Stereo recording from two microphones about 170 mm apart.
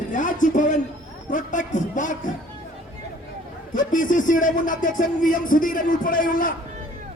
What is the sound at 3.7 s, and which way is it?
A man's voice, 50° left (ahead or behind).